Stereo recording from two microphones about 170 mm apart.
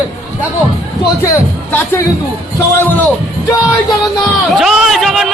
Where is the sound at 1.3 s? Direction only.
15° left (ahead or behind).